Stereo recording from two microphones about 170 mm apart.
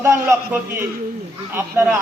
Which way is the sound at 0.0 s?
15° right (ahead or behind).